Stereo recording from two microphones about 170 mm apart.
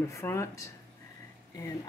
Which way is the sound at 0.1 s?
15° left (ahead or behind).